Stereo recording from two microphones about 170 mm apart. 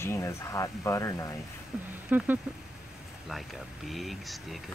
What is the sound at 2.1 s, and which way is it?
Speech, 10° right (ahead or behind).